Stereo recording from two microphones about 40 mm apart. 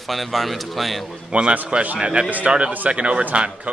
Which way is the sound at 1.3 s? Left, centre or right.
Right.